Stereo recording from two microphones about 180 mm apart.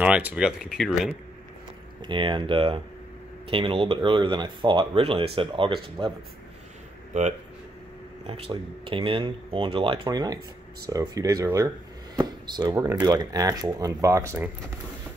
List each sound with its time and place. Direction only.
0.0 s speech: 10° right (ahead or behind)
2.0 s speech: 25° right (ahead or behind)
8.3 s speech: 30° right (ahead or behind)